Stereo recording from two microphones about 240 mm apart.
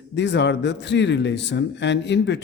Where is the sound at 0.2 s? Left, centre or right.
Left.